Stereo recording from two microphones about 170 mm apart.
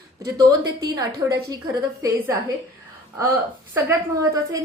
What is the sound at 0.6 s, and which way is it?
A woman's voice, 20° right (ahead or behind).